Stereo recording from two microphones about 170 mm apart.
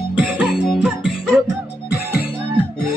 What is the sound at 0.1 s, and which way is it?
Music, 5° right (ahead or behind).